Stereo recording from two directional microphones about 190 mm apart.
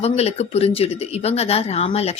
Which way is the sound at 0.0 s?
35° left (ahead or behind).